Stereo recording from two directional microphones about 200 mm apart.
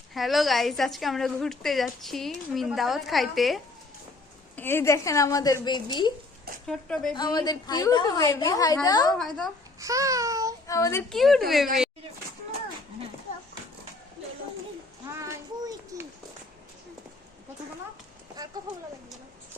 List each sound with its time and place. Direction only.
0.1 s a woman's voice: centre (ahead or behind)
4.5 s a woman's voice: 10° left (ahead or behind)
6.7 s a woman's voice: 5° left (ahead or behind)
7.1 s a woman's voice: 20° left (ahead or behind)
9.1 s a woman's voice: centre (ahead or behind)
9.8 s babbling: 15° right (ahead or behind)
10.7 s a woman's voice: 15° left (ahead or behind)
11.1 s a woman's voice: centre (ahead or behind)
15.0 s a sound: 15° right (ahead or behind)